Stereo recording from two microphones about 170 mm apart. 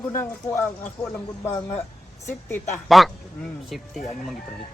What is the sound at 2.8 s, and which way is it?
Speech, centre (ahead or behind).